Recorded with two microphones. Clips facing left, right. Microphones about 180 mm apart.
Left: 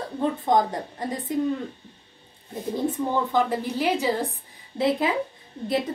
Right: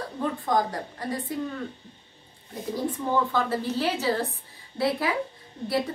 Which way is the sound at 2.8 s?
20° left (ahead or behind).